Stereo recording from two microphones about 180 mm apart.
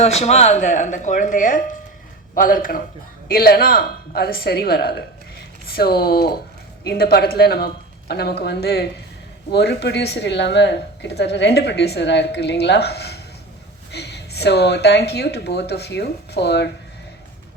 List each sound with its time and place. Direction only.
0.0 s a woman's voice: 35° left (ahead or behind); by 16.6 s 70° left (ahead or behind)